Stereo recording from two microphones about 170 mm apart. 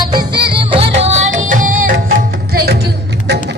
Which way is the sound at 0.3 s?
70° right (ahead or behind).